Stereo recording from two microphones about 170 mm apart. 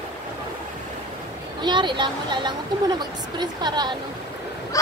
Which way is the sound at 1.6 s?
25° right (ahead or behind).